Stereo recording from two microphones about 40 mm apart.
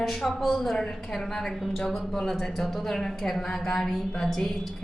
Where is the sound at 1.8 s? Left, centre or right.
Centre.